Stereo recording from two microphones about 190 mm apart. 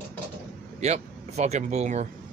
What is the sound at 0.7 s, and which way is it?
Speech, 35° right (ahead or behind).